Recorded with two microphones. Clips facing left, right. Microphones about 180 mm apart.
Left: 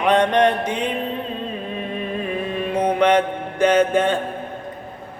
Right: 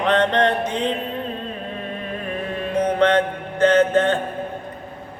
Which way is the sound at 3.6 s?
10° left (ahead or behind).